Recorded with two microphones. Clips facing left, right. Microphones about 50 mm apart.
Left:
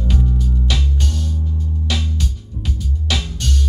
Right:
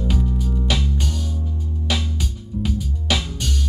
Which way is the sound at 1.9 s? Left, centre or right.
Centre.